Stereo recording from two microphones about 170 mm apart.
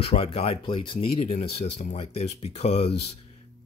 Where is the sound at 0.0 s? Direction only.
35° left (ahead or behind).